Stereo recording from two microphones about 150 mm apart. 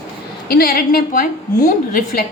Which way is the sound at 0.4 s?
80° left.